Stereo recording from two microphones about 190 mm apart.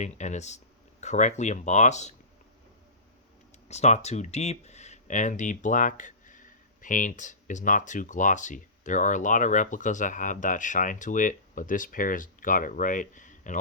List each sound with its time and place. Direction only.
0.0 s speech: 40° left (ahead or behind)
3.7 s speech: 35° left (ahead or behind)